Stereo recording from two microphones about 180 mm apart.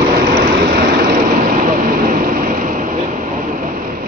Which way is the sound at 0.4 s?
60° right (ahead or behind).